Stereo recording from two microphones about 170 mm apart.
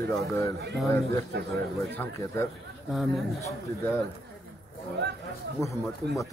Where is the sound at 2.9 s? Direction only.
Centre (ahead or behind).